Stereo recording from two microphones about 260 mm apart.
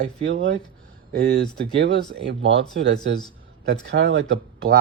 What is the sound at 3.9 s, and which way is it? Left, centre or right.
Speech, right.